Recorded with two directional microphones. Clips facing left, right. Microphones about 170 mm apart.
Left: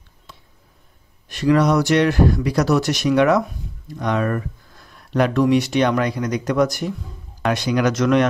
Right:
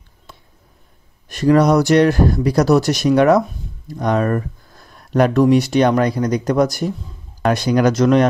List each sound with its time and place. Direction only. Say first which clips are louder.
1.3 s speech: right 3 dB; 40° right (ahead or behind)